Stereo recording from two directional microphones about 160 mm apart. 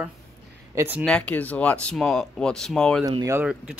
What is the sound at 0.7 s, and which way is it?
Speech, 10° right (ahead or behind).